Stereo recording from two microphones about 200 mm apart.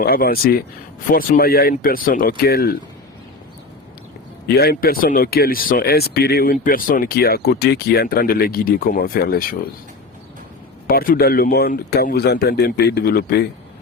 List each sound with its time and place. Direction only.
0.0 s speech: 50° left (ahead or behind)
4.4 s speech: 50° left (ahead or behind)
10.8 s speech: 50° left (ahead or behind)